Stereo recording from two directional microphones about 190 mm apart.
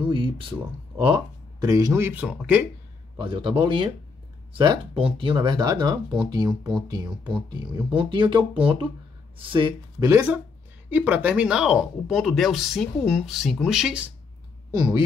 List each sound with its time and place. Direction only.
0.0 s speech: 25° right (ahead or behind); by 2.6 s 10° right (ahead or behind)
3.2 s speech: 25° right (ahead or behind)
7.1 s speech: 5° right (ahead or behind)
7.4 s speech: 25° right (ahead or behind); by 14.0 s centre (ahead or behind)
14.7 s speech: 15° right (ahead or behind)